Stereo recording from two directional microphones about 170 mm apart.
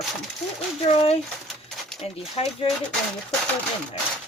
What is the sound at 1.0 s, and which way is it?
Speech, 35° left (ahead or behind).